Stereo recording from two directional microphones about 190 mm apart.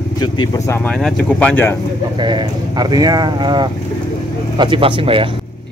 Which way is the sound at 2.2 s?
20° right (ahead or behind).